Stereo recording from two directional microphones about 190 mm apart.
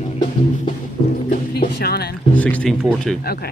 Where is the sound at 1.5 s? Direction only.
55° left (ahead or behind).